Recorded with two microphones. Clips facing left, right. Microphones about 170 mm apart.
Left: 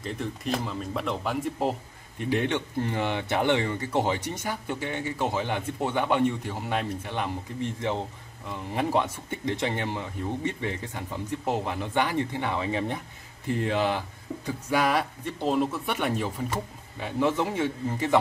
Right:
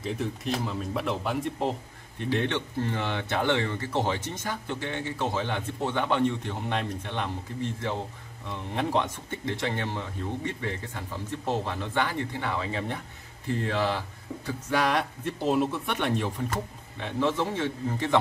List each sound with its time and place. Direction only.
0.0 s a man's voice: centre (ahead or behind)
8.5 s a man's voice: 5° left (ahead or behind)
14.4 s a man's voice: 5° left (ahead or behind)